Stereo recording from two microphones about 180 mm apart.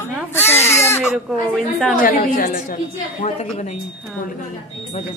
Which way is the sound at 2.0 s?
50° left (ahead or behind).